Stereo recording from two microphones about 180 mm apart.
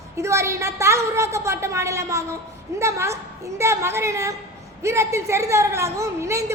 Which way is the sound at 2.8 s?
15° right (ahead or behind).